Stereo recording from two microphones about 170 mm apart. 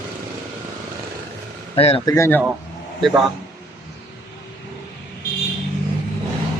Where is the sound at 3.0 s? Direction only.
Centre (ahead or behind).